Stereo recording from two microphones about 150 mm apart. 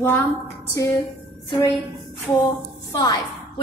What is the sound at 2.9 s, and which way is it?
Speech, 25° left (ahead or behind).